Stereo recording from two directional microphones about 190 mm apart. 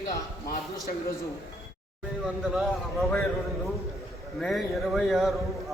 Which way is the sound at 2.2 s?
Centre (ahead or behind).